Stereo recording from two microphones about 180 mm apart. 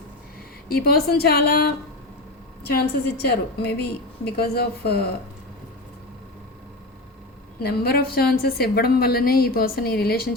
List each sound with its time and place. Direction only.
0.7 s a woman's voice: 55° left (ahead or behind)
7.6 s a woman's voice: 60° left (ahead or behind)